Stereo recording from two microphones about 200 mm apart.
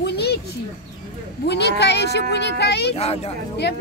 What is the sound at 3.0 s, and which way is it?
Speech, 30° left (ahead or behind).